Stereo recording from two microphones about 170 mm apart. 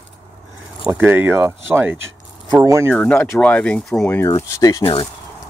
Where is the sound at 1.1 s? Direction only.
10° right (ahead or behind).